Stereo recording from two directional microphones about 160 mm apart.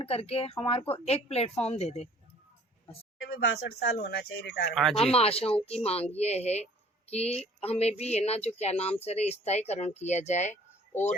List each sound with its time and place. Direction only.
0.0 s speech: 35° left (ahead or behind)
3.4 s speech: 85° left
4.7 s speech: centre (ahead or behind)
5.1 s speech: 40° left (ahead or behind)